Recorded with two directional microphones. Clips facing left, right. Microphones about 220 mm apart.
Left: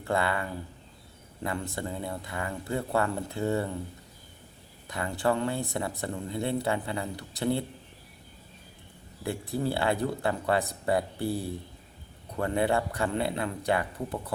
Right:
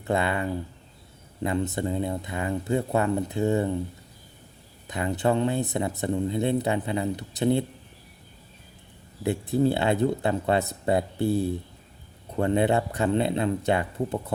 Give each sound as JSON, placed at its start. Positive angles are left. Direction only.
{"t": 0.0, "sound": "speech", "side_deg": -20}
{"t": 4.9, "sound": "speech", "side_deg": -20}
{"t": 9.2, "sound": "speech", "side_deg": -20}